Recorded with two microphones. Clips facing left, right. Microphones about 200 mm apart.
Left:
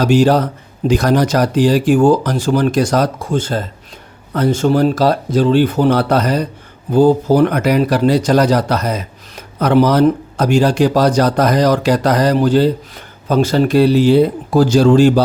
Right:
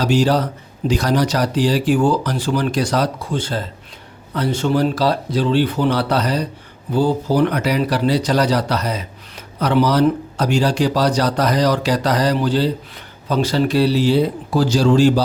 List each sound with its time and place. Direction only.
0.0 s speech: 50° left (ahead or behind)